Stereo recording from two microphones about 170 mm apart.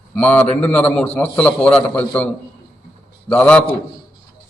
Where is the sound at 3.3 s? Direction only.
5° left (ahead or behind).